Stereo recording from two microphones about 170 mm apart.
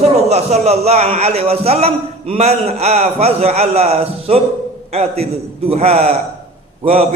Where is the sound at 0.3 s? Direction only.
40° right (ahead or behind).